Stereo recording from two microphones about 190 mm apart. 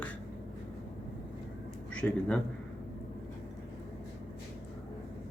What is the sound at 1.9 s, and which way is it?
Speech, 5° left (ahead or behind).